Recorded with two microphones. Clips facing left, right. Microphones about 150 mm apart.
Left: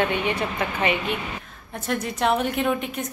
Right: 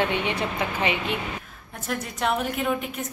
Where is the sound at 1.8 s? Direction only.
Centre (ahead or behind).